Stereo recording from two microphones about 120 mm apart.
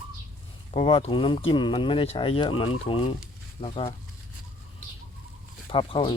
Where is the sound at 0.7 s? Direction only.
55° left (ahead or behind).